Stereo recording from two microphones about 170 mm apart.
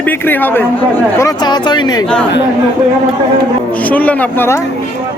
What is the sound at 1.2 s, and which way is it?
Speech, 25° left (ahead or behind).